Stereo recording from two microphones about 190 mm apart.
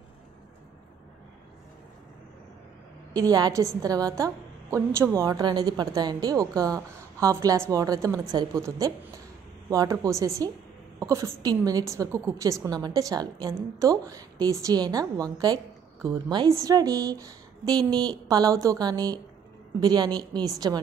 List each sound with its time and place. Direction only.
3.2 s a woman's voice: 20° right (ahead or behind)